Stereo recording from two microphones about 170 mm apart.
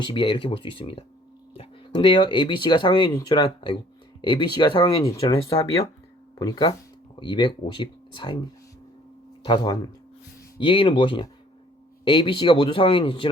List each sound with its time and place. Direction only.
0.0 s speech: 30° left (ahead or behind)
9.4 s speech: 25° left (ahead or behind)